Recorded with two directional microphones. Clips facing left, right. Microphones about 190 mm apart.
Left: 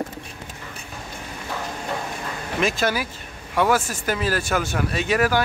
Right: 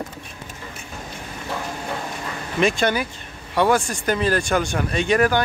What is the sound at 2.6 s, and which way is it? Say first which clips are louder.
Speech: right 3 dB; centre (ahead or behind).